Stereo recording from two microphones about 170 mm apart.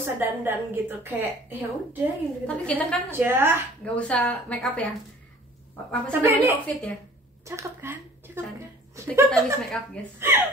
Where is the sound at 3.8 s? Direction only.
5° left (ahead or behind).